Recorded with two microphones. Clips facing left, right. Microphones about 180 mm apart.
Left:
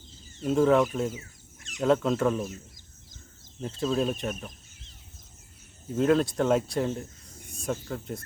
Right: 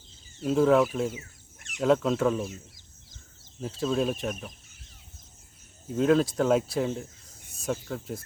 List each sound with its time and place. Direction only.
0.3 s speech: centre (ahead or behind)
1.5 s chicken: 60° right (ahead or behind)
1.8 s speech: centre (ahead or behind)
3.6 s speech: centre (ahead or behind)
5.9 s speech: centre (ahead or behind)